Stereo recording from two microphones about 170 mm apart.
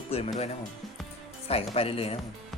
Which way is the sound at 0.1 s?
35° left (ahead or behind).